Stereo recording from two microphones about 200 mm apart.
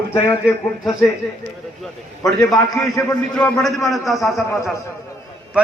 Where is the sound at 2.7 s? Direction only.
15° left (ahead or behind).